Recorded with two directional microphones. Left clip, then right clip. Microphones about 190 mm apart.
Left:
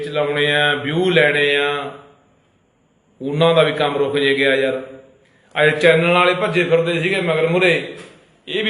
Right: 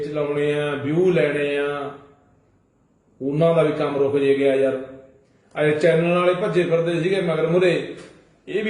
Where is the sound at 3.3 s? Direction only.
5° right (ahead or behind).